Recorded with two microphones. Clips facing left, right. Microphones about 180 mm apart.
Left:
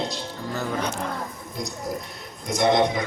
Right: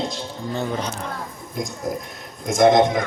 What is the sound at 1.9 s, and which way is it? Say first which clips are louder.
Speech: right 3 dB; 50° right (ahead or behind).